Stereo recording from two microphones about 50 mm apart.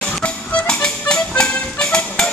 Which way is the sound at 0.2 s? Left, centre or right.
Centre.